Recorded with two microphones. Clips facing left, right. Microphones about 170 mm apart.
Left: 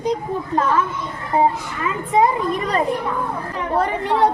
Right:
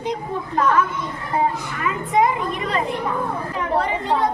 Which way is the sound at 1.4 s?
30° left (ahead or behind).